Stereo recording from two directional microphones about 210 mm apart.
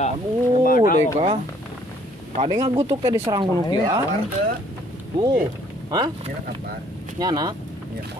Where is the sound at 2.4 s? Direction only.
30° right (ahead or behind).